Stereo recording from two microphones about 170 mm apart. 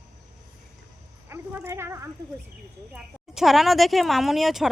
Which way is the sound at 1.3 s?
15° right (ahead or behind).